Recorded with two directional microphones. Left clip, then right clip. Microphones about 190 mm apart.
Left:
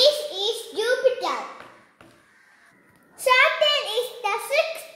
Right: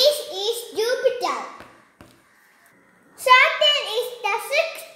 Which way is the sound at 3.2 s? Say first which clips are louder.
Right 3 dB; 5° right (ahead or behind).